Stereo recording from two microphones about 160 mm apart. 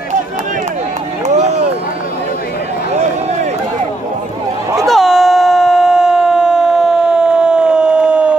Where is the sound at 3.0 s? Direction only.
45° right (ahead or behind).